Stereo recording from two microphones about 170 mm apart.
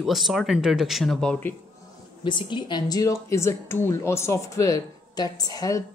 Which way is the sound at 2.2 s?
30° left (ahead or behind).